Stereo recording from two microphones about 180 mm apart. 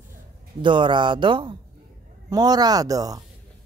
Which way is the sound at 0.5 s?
25° right (ahead or behind).